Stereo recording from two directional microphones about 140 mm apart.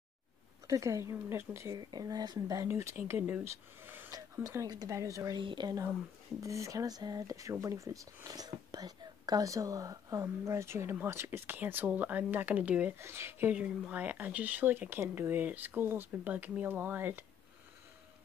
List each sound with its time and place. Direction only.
0.7 s speech: 20° right (ahead or behind)
1.8 s speech: 30° right (ahead or behind); by 17.2 s 15° right (ahead or behind)